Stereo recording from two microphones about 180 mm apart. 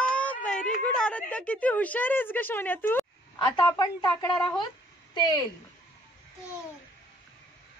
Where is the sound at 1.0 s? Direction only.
5° left (ahead or behind).